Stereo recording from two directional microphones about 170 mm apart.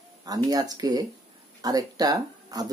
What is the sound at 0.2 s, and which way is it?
Speech, 20° right (ahead or behind).